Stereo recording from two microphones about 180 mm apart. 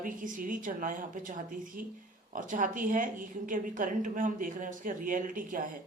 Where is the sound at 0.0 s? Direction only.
50° right (ahead or behind).